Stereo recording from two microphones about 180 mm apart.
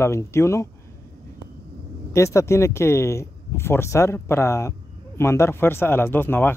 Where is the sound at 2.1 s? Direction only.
15° left (ahead or behind).